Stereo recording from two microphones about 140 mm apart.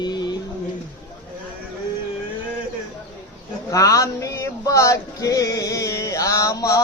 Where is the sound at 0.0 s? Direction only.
30° left (ahead or behind).